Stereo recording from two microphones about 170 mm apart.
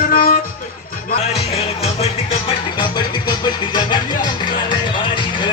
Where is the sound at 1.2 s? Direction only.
40° left (ahead or behind).